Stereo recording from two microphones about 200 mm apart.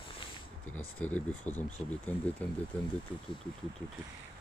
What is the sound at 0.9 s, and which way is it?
Speech, 5° left (ahead or behind).